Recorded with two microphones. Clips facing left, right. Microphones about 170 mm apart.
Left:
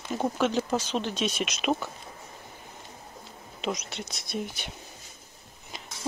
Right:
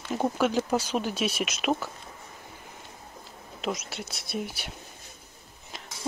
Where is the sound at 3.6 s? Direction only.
5° right (ahead or behind).